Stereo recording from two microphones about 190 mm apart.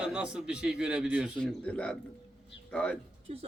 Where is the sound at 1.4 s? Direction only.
5° left (ahead or behind).